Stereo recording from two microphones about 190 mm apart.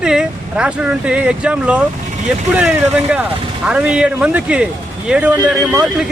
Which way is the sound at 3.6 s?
5° right (ahead or behind).